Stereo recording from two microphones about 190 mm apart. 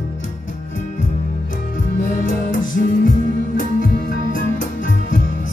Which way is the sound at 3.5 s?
45° left (ahead or behind).